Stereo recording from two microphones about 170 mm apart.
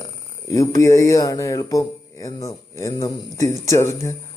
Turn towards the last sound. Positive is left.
turn(degrees=15)  # may be behind; listen again after turning